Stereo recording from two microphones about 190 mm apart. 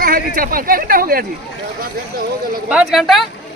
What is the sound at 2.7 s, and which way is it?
Speech, 5° right (ahead or behind).